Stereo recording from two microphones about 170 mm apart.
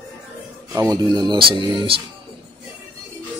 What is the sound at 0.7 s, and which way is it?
Speech, 20° right (ahead or behind).